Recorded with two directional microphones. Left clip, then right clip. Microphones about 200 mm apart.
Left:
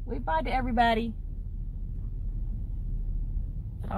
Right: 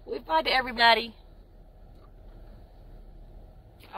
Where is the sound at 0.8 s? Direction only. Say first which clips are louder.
Right 3 dB; 20° right (ahead or behind).